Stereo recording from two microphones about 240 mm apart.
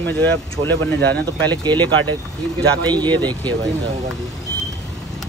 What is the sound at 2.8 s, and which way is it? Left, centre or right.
Speech, centre.